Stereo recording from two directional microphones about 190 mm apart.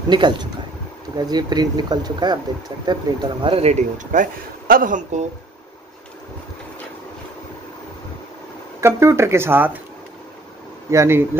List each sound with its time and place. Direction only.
0.1 s a man's voice: 25° right (ahead or behind); by 5.2 s 45° right (ahead or behind)
8.8 s speech: 15° right (ahead or behind)
10.9 s speech: 15° right (ahead or behind)